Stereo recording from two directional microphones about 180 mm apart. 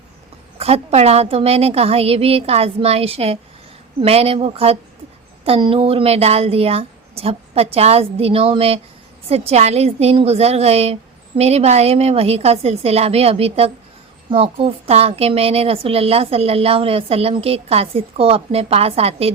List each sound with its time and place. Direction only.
0.6 s speech: 35° right (ahead or behind)